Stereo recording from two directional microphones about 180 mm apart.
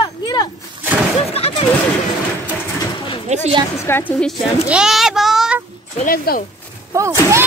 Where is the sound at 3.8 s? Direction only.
10° left (ahead or behind).